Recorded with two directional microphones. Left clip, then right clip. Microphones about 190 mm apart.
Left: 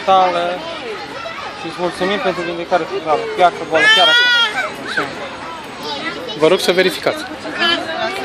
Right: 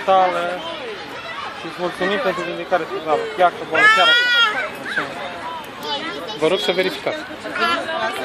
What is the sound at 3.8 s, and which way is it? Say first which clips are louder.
Speech: left 2 dB; 20° right (ahead or behind).